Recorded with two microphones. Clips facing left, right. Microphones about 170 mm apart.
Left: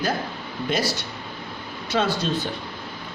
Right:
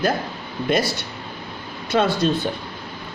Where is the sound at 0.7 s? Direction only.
60° right (ahead or behind).